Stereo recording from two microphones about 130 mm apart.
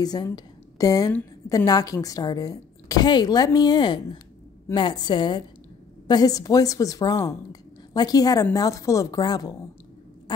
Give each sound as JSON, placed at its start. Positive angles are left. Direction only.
{"t": 0.0, "sound": "a woman's voice", "side_deg": 30}